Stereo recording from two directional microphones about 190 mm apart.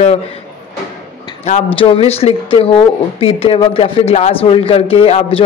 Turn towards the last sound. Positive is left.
turn(degrees=30)  # may be behind; listen again after turning